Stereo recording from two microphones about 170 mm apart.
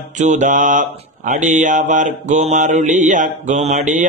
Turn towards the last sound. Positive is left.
turn(degrees=-45)  # may be behind; listen again after turning